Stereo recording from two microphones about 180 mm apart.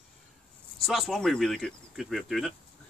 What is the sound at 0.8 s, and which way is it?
Speech, centre (ahead or behind).